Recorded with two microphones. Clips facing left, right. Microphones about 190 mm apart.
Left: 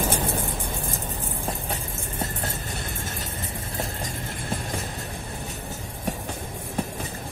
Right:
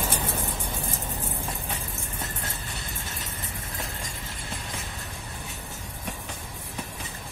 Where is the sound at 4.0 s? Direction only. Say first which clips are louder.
Left 6 dB; 50° left (ahead or behind).